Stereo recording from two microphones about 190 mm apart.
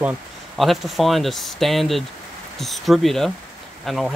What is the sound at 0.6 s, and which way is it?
Speech, centre (ahead or behind).